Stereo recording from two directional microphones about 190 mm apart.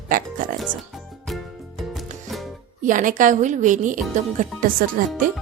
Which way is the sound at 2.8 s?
45° right (ahead or behind).